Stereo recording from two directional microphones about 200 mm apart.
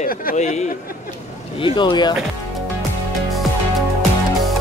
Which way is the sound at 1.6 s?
25° left (ahead or behind).